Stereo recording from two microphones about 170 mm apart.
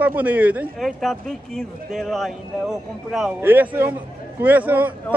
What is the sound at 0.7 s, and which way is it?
Speech, centre (ahead or behind).